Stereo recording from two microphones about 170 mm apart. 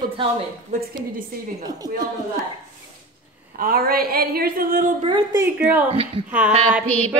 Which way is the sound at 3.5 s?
60° right (ahead or behind).